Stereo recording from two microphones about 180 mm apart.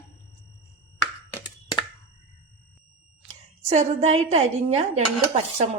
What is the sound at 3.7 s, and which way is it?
Speech, 35° right (ahead or behind).